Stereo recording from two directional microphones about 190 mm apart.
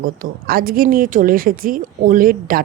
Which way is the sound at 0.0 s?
50° right (ahead or behind).